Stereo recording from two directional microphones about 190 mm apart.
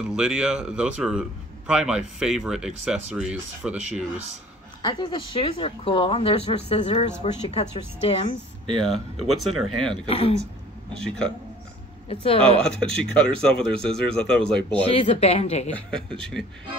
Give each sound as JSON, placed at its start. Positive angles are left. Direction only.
{"t": 0.0, "sound": "speech", "side_deg": -5}
{"t": 4.8, "sound": "speech", "side_deg": 25}
{"t": 8.7, "sound": "speech", "side_deg": 0}
{"t": 10.0, "sound": "speech", "side_deg": 30}
{"t": 10.9, "sound": "speech", "side_deg": 5}
{"t": 12.1, "sound": "speech", "side_deg": 30}
{"t": 12.6, "sound": "speech", "side_deg": 5}
{"t": 14.9, "sound": "speech", "side_deg": 30}
{"t": 15.7, "sound": "speech", "side_deg": 5}